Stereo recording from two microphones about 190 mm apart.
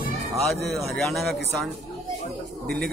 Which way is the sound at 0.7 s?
Centre (ahead or behind).